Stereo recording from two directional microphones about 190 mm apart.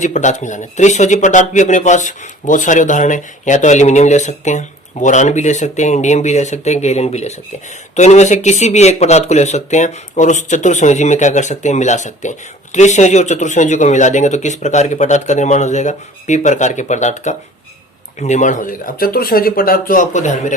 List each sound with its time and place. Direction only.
0.0 s speech: 40° left (ahead or behind)